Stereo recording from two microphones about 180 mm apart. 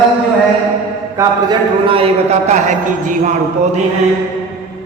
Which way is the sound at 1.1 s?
20° right (ahead or behind).